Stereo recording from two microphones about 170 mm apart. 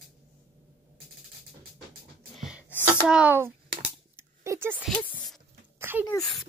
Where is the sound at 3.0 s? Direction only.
5° right (ahead or behind).